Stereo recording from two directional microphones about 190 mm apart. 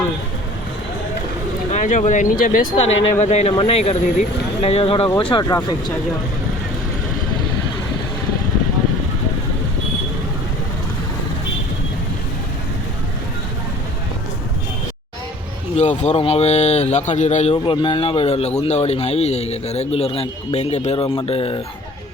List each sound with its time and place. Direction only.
1.7 s speech: 40° left (ahead or behind)
3.2 s speech: 35° left (ahead or behind); by 5.7 s 20° left (ahead or behind)
15.7 s speech: 40° left (ahead or behind)